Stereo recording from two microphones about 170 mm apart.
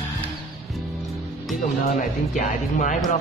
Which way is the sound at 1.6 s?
50° left (ahead or behind).